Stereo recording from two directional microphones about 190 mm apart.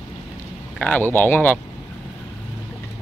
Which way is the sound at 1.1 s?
10° left (ahead or behind).